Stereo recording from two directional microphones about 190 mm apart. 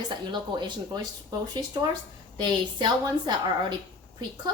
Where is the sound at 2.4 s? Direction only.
25° right (ahead or behind).